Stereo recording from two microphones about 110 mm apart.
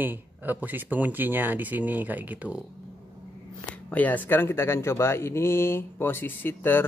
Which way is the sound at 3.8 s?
15° left (ahead or behind).